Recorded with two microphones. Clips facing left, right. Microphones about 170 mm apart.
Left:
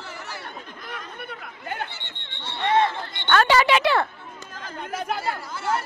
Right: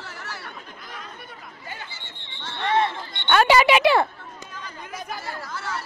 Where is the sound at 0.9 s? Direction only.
65° left (ahead or behind).